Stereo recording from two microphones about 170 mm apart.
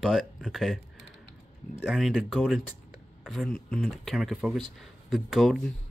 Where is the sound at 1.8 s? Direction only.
5° right (ahead or behind).